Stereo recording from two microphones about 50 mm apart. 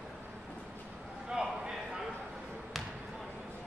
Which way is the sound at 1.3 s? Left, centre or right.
Centre.